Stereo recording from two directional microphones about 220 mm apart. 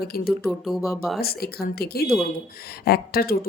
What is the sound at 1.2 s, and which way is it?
Speech, 45° left (ahead or behind).